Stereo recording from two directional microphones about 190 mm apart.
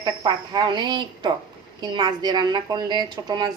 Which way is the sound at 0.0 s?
25° right (ahead or behind).